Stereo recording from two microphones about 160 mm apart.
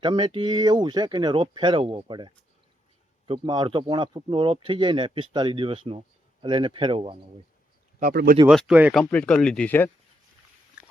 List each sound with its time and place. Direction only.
0.0 s speech: 30° right (ahead or behind)
8.1 s speech: 70° right (ahead or behind)
8.4 s speech: 5° right (ahead or behind)
9.0 s speech: 10° left (ahead or behind)
10.8 s biting: 5° right (ahead or behind)